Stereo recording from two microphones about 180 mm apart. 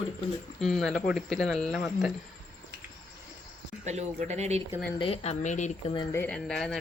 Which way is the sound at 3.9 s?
40° right (ahead or behind).